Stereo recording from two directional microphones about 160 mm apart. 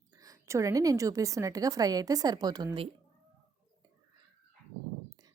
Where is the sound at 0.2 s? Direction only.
20° right (ahead or behind).